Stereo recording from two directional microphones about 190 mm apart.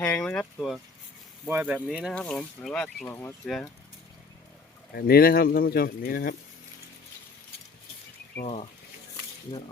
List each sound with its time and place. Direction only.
0.0 s speech: 5° left (ahead or behind)
1.5 s speech: 10° right (ahead or behind)
3.1 s speech: 15° left (ahead or behind)
3.4 s speech: centre (ahead or behind)
4.9 s speech: 55° left (ahead or behind)